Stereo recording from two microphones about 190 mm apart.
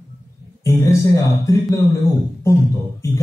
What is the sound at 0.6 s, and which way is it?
Music, 15° left (ahead or behind).